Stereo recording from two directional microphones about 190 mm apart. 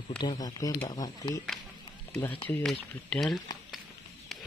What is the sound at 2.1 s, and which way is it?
Speech, 10° left (ahead or behind).